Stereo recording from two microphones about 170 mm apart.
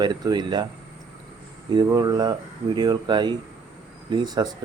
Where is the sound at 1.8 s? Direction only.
25° right (ahead or behind).